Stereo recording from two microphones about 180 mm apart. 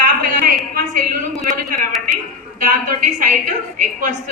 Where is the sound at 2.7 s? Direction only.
45° right (ahead or behind).